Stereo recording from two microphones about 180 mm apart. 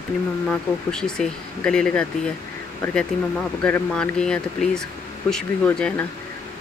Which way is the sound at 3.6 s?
5° left (ahead or behind).